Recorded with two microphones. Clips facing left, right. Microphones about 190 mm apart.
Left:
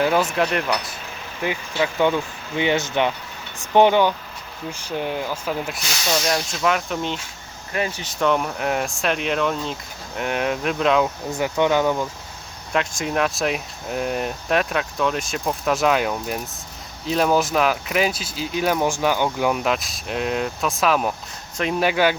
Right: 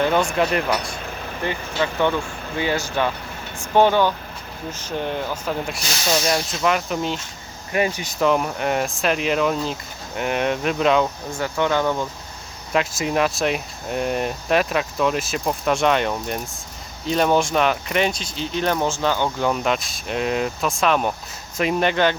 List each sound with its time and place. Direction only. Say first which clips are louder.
0.0 s speech: even; 5° left (ahead or behind)
1.5 s speech: left 1 dB; 10° left (ahead or behind)
7.7 s speech: right 4 dB; 15° right (ahead or behind)
11.3 s speech: left 2 dB; 15° left (ahead or behind)
12.7 s speech: right 2 dB; 5° right (ahead or behind)